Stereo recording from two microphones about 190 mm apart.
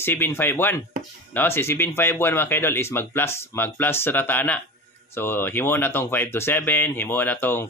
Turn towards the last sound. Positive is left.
turn(degrees=10)  # may be behind; listen again after turning